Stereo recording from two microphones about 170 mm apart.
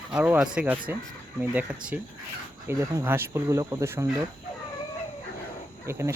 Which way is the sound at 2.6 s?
15° right (ahead or behind).